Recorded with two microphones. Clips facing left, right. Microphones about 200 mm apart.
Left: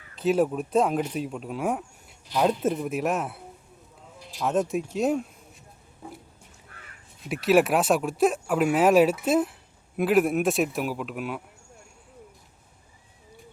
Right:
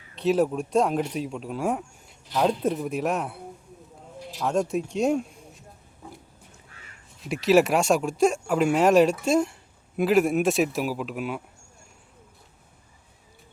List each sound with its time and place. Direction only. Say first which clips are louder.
0.2 s speech: right 1 dB; centre (ahead or behind)
6.7 s crow: left 1 dB; 50° left (ahead or behind)
7.4 s speech: right 1 dB; centre (ahead or behind)